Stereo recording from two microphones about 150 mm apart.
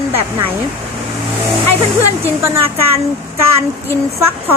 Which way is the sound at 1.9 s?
15° right (ahead or behind).